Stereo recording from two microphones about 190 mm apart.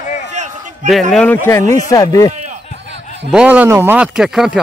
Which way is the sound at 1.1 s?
10° left (ahead or behind).